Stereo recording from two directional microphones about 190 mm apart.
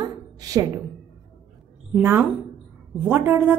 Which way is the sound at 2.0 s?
10° right (ahead or behind).